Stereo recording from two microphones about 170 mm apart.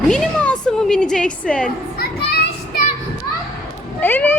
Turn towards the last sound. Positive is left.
turn(degrees=10)  # may be behind; listen again after turning